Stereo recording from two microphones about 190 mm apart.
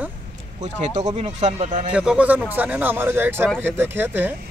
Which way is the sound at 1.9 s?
5° right (ahead or behind).